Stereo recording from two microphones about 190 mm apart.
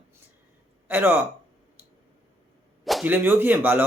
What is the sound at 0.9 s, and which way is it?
Speech, 10° right (ahead or behind).